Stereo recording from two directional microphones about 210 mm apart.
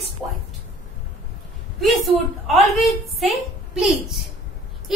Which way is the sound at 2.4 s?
Centre (ahead or behind).